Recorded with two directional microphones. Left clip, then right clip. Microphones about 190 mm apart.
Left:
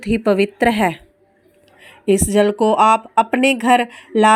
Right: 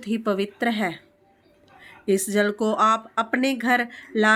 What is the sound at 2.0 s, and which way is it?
Speech, 25° left (ahead or behind).